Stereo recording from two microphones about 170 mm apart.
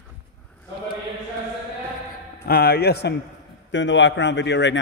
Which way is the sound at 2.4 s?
65° left (ahead or behind).